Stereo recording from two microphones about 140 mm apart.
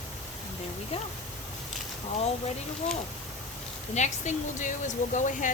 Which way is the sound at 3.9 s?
55° left (ahead or behind).